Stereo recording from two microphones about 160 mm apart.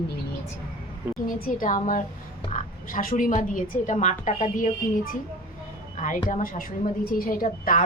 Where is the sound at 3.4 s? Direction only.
55° left (ahead or behind).